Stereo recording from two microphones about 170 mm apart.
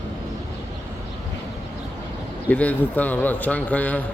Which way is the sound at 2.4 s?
10° left (ahead or behind).